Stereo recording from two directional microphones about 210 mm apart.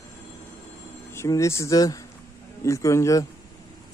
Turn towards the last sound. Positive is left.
turn(degrees=15)  # may be behind; listen again after turning